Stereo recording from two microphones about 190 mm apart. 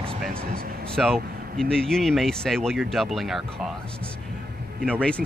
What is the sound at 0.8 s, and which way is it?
Speech, 5° left (ahead or behind).